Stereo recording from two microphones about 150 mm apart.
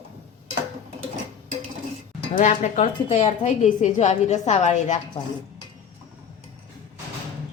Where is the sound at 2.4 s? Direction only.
50° left (ahead or behind).